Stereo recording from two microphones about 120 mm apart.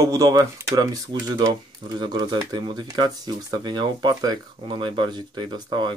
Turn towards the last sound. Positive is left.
turn(degrees=-40)  # may be behind; listen again after turning